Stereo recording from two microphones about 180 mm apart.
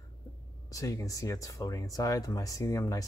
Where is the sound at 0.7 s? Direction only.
15° left (ahead or behind).